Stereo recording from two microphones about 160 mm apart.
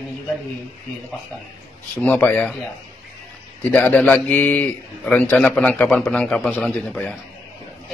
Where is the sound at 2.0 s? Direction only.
10° left (ahead or behind).